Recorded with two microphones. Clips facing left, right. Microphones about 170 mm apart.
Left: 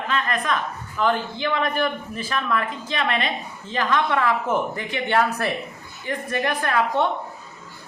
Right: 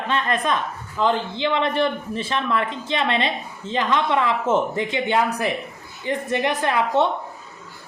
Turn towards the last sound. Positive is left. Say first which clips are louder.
# right 2 dB
turn(degrees=-20)  # may be behind; listen again after turning